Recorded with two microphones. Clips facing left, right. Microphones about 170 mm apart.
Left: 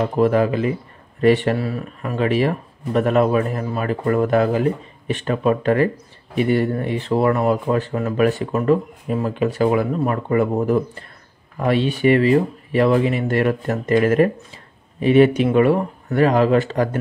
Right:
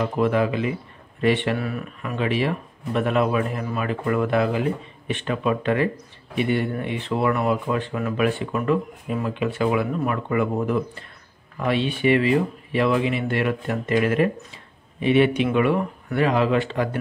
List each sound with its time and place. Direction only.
0.2 s speech: 40° left (ahead or behind)